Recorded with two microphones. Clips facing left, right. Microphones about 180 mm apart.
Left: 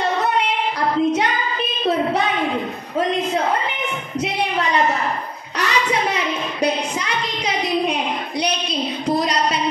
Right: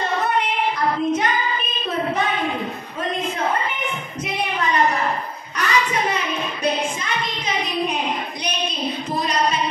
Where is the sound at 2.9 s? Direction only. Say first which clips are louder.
Left 7 dB; 70° left (ahead or behind).